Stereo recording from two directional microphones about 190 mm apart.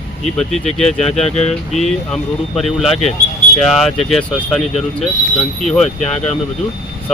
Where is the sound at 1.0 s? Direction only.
35° left (ahead or behind).